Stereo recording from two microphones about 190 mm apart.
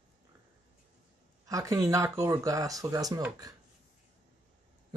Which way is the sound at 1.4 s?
20° right (ahead or behind).